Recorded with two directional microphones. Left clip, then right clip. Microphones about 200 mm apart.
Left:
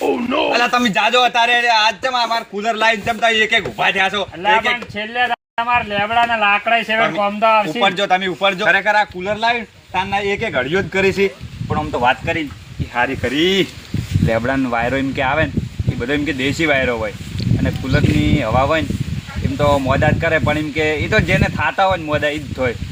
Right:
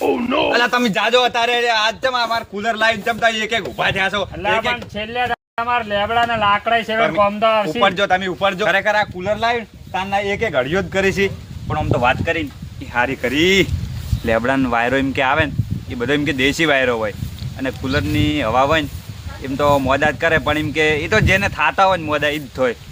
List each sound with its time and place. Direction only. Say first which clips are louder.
0.0 s a sound: even; centre (ahead or behind)
0.5 s a man's voice: left 3 dB; 30° right (ahead or behind)
5.1 s speech: left 3 dB; 5° right (ahead or behind)
7.0 s speech: even; 20° right (ahead or behind)
10.9 s a man's voice: left 2 dB; 30° right (ahead or behind)
11.7 s a man's voice: left 1 dB; 10° right (ahead or behind)
21.0 s speech: even; 5° right (ahead or behind)
21.2 s a man's voice: right 1 dB; 20° right (ahead or behind)
21.8 s speech: right 1 dB; 5° right (ahead or behind)
22.1 s a man's voice: even; 25° right (ahead or behind)